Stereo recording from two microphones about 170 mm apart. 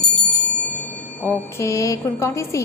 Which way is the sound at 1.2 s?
15° left (ahead or behind).